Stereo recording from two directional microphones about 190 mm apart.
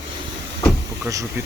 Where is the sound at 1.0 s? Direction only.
15° right (ahead or behind).